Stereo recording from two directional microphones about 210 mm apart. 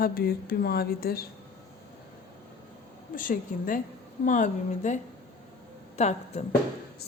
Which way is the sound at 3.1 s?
40° left (ahead or behind).